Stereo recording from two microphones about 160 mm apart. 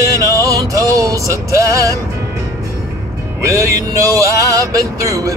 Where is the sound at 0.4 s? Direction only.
20° right (ahead or behind).